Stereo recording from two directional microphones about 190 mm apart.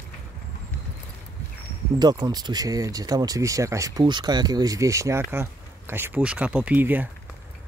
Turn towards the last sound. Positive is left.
turn(degrees=-10)  # may be behind; listen again after turning